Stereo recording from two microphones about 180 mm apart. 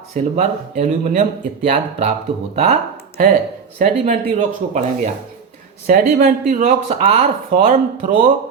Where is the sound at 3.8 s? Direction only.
40° right (ahead or behind).